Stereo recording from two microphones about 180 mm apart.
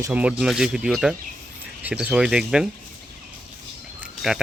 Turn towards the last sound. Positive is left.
turn(degrees=0)  # may be behind; listen again after turning